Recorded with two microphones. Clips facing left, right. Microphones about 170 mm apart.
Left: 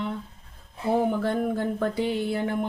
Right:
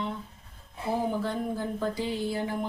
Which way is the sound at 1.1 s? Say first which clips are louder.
Left 5 dB; 60° left (ahead or behind).